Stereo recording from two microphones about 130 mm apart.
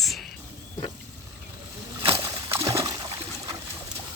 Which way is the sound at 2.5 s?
25° right (ahead or behind).